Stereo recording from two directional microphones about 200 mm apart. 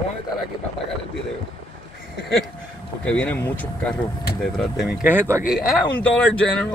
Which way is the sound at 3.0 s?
5° left (ahead or behind).